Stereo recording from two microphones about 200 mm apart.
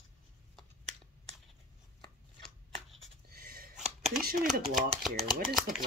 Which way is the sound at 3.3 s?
45° right (ahead or behind).